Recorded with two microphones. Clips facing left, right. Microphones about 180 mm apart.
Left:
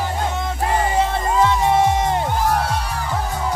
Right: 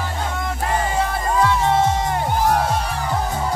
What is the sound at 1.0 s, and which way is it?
Music, 20° left (ahead or behind).